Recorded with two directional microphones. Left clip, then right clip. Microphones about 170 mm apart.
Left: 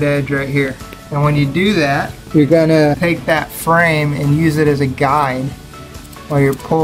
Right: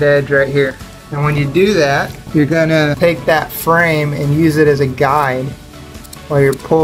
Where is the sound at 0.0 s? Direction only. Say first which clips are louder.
Right 6 dB; 15° right (ahead or behind).